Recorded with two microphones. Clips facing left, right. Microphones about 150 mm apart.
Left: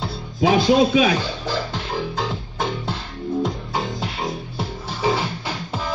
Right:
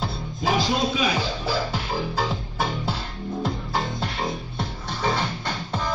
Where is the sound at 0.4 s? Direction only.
70° left (ahead or behind).